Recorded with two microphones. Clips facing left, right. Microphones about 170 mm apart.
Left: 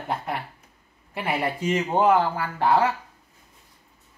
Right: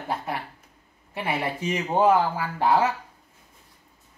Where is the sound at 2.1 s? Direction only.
15° right (ahead or behind).